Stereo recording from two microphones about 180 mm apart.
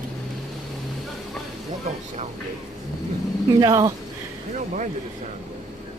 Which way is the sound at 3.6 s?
20° right (ahead or behind).